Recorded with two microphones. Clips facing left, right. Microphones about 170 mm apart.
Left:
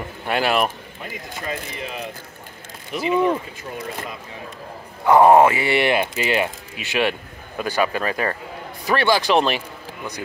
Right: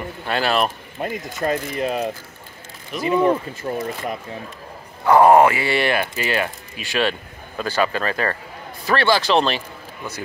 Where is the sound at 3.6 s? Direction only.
35° right (ahead or behind).